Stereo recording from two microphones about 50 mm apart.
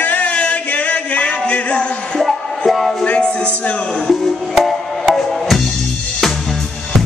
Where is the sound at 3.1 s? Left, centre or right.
Left.